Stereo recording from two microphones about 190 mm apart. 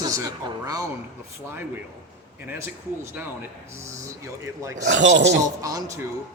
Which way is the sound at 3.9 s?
15° right (ahead or behind).